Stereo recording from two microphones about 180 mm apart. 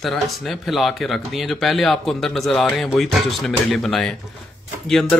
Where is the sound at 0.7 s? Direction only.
Centre (ahead or behind).